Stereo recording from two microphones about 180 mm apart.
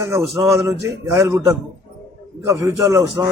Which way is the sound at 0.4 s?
15° right (ahead or behind).